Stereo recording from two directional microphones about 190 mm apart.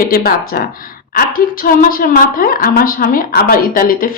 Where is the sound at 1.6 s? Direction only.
50° left (ahead or behind).